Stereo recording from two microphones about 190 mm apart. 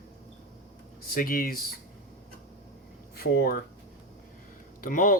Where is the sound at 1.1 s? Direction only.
50° left (ahead or behind).